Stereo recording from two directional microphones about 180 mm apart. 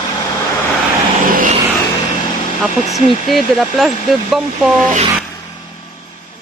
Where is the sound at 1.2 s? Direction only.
50° right (ahead or behind).